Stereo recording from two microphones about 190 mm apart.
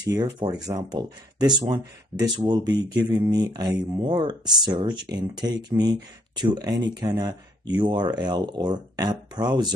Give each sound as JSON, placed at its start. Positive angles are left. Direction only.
{"t": 0.0, "sound": "speech", "side_deg": -20}